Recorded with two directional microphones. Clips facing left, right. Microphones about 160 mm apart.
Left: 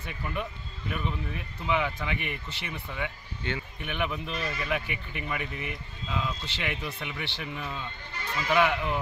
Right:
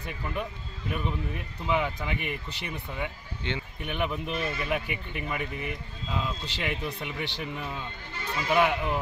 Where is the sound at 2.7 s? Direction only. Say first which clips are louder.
Even; 10° right (ahead or behind).